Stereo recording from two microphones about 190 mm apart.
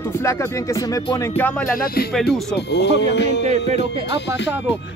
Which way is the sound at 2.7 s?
65° left (ahead or behind).